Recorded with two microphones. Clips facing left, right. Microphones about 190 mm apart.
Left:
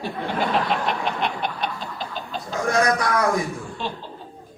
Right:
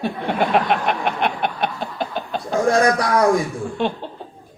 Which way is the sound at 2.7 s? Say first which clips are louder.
Right 3 dB; 30° right (ahead or behind).